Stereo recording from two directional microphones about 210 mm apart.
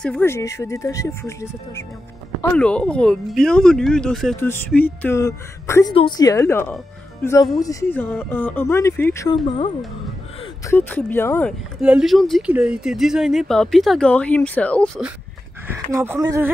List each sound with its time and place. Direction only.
0.0 s speech: 5° left (ahead or behind)
10.7 s speech: 10° left (ahead or behind)
11.8 s speech: 5° right (ahead or behind)
15.9 s speech: 10° right (ahead or behind)